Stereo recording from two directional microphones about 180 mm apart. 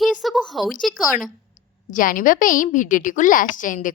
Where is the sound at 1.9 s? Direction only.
50° left (ahead or behind).